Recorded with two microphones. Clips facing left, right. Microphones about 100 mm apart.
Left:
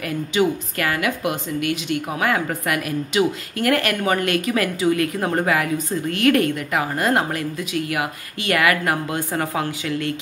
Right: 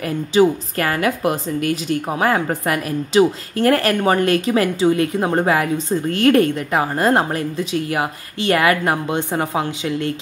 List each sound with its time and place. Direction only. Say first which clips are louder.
0.3 s a woman's voice: right 6 dB; 35° right (ahead or behind)